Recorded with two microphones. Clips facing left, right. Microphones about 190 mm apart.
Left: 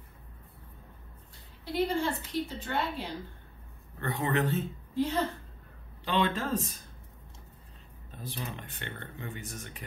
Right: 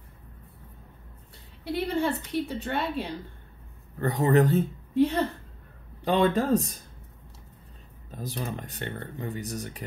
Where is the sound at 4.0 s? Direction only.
40° right (ahead or behind).